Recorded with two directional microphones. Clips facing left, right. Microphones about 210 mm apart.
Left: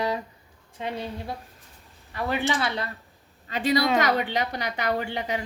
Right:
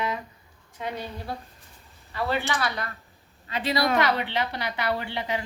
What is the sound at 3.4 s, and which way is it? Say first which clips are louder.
A woman's voice: left 2 dB; 45° left (ahead or behind).